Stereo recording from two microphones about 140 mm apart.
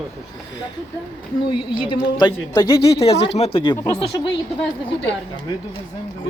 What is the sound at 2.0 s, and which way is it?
Speech, 30° left (ahead or behind).